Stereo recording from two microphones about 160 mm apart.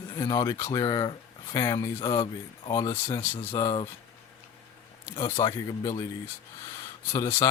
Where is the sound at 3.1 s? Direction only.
10° left (ahead or behind).